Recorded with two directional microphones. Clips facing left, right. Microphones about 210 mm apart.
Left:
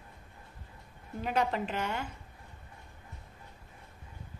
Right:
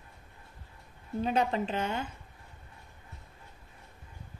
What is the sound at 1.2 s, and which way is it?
Speech, 25° right (ahead or behind).